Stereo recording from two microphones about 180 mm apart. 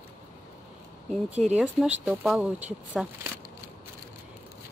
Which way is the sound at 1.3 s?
40° right (ahead or behind).